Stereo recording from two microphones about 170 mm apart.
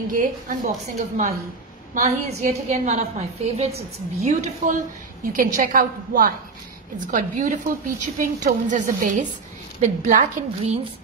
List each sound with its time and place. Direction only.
0.1 s a woman's voice: 50° right (ahead or behind)
5.2 s a woman's voice: 55° right (ahead or behind); by 10.9 s 40° right (ahead or behind)